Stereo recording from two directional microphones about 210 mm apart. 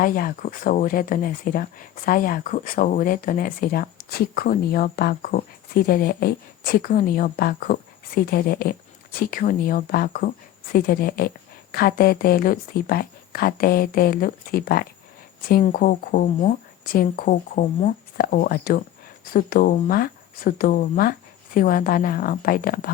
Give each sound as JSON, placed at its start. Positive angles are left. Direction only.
{"t": 0.0, "sound": "speech", "side_deg": 40}